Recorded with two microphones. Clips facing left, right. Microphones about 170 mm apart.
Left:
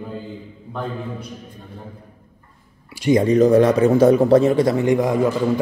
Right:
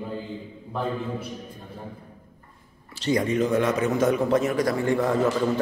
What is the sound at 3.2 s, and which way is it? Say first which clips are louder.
A man's voice: left 11 dB; 35° left (ahead or behind).